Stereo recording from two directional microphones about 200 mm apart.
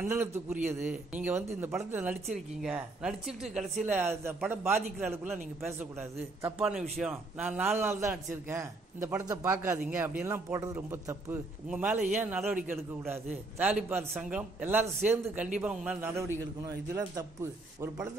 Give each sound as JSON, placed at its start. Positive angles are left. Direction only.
{"t": 0.0, "sound": "speech", "side_deg": -10}